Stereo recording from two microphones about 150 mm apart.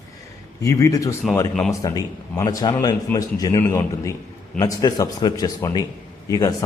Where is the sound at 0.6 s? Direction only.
20° left (ahead or behind).